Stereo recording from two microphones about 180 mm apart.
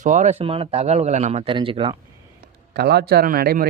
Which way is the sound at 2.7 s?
65° right (ahead or behind).